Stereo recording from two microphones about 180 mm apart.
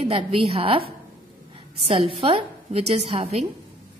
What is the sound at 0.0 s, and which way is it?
A woman's voice, 35° right (ahead or behind).